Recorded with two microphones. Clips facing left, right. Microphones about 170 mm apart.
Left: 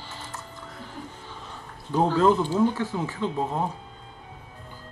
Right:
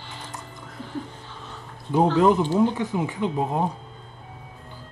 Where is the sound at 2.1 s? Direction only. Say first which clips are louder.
Right 1 dB; 15° right (ahead or behind).